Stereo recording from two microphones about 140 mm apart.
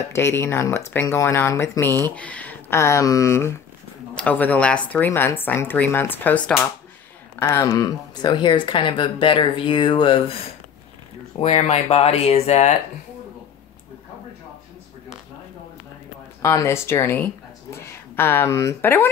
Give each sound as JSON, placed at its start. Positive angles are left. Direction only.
{"t": 0.1, "sound": "speech", "side_deg": 20}
{"t": 7.3, "sound": "speech", "side_deg": 20}
{"t": 11.3, "sound": "speech", "side_deg": 50}
{"t": 16.4, "sound": "speech", "side_deg": 20}